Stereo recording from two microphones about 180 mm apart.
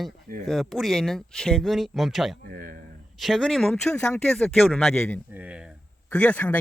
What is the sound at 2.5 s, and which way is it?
Speech, 50° right (ahead or behind).